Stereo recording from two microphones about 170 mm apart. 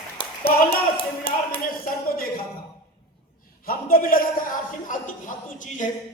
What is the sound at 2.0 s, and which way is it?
Speech, 60° left (ahead or behind).